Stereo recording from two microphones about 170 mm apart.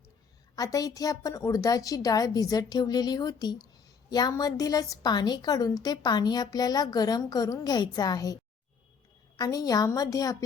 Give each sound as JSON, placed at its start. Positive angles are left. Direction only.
{"t": 0.5, "sound": "a woman's voice", "side_deg": 20}
{"t": 9.4, "sound": "a woman's voice", "side_deg": 20}